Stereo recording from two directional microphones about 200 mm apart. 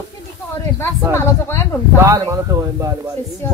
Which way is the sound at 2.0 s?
15° right (ahead or behind).